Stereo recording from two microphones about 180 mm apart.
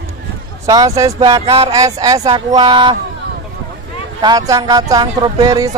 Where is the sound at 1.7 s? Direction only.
20° right (ahead or behind).